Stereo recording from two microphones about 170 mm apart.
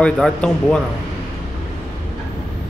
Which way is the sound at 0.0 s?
5° left (ahead or behind).